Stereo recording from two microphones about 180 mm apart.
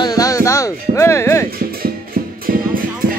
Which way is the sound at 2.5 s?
50° right (ahead or behind).